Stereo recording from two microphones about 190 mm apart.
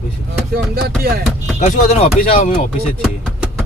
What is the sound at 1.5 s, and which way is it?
Speech, 40° left (ahead or behind).